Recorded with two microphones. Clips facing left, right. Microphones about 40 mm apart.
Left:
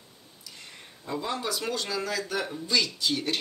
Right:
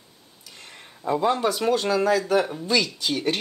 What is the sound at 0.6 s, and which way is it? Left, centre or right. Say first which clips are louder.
Speech: right 5 dB; centre.